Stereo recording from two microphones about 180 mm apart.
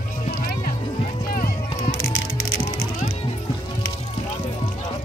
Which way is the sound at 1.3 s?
50° left (ahead or behind).